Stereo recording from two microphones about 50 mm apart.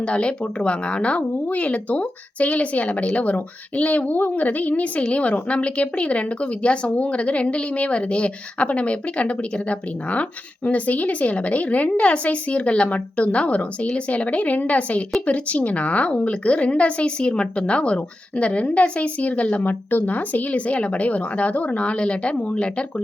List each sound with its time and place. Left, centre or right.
0.0 s speech: left
19.6 s speech: left